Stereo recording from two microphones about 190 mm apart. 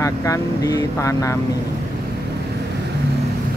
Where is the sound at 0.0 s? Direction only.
15° left (ahead or behind).